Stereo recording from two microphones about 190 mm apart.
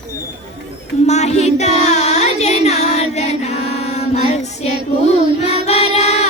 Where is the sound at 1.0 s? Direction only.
35° left (ahead or behind).